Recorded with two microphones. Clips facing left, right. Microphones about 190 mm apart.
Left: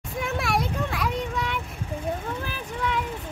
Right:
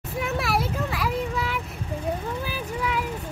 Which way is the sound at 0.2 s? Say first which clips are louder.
Right 1 dB; centre (ahead or behind).